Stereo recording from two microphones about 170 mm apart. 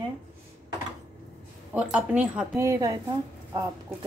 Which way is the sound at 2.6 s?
20° right (ahead or behind).